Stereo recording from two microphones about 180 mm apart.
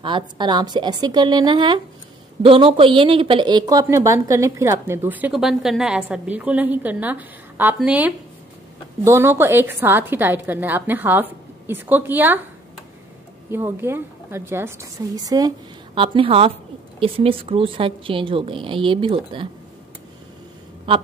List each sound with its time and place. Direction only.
0.0 s a woman's voice: 25° right (ahead or behind)